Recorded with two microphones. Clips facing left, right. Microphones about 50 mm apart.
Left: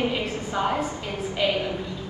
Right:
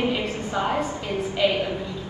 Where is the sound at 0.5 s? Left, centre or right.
Right.